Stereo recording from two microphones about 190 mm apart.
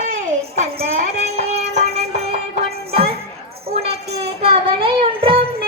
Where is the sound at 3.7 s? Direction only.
30° right (ahead or behind).